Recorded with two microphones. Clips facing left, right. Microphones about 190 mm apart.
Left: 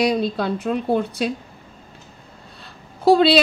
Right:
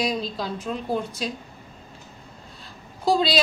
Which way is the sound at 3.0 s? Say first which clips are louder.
Left 7 dB; 60° left (ahead or behind).